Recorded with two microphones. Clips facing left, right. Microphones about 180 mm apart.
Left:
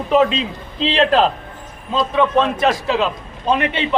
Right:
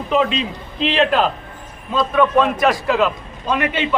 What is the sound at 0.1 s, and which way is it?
A man's voice, 40° left (ahead or behind).